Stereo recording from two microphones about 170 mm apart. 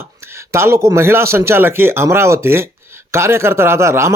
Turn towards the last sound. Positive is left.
turn(degrees=-15)  # may be behind; listen again after turning